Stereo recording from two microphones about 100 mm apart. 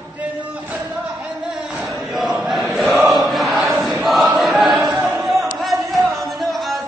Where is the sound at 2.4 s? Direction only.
Centre (ahead or behind).